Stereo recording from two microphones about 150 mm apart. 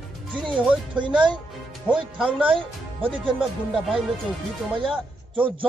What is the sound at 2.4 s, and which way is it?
Speech, 35° right (ahead or behind).